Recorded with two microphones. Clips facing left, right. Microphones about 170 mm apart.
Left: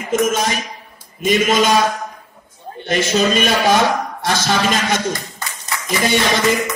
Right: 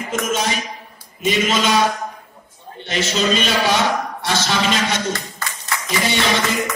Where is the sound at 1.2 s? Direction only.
50° left (ahead or behind).